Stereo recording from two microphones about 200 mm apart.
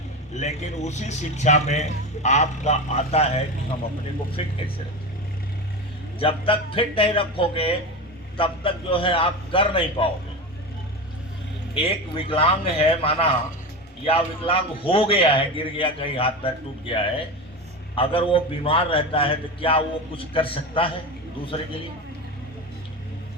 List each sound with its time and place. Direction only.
0.3 s a man's voice: 35° left (ahead or behind)
6.1 s a man's voice: 25° left (ahead or behind)
11.7 s a man's voice: 25° left (ahead or behind)